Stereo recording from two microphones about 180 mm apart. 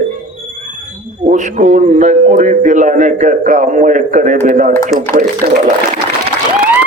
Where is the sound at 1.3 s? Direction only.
40° right (ahead or behind).